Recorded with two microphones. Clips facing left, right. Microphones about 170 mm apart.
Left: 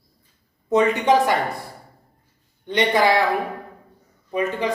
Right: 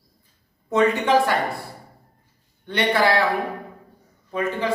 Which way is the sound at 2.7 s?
15° left (ahead or behind).